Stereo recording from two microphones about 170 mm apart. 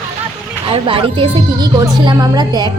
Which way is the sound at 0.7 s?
30° right (ahead or behind).